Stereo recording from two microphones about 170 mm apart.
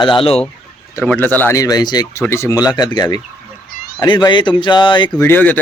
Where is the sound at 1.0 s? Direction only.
10° left (ahead or behind); by 5.1 s 25° left (ahead or behind).